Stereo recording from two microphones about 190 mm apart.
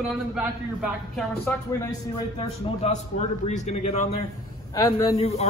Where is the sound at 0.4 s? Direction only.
5° right (ahead or behind).